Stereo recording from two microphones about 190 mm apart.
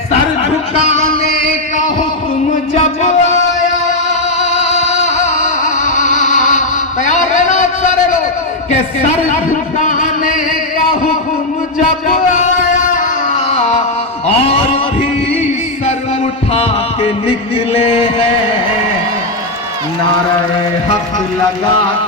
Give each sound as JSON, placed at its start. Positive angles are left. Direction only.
{"t": 2.5, "sound": "music", "side_deg": 35}
{"t": 4.4, "sound": "music", "side_deg": 35}
{"t": 9.0, "sound": "a sound", "side_deg": 45}
{"t": 12.0, "sound": "a sound", "side_deg": 45}
{"t": 16.5, "sound": "heart murmur", "side_deg": 30}
{"t": 17.7, "sound": "music", "side_deg": 30}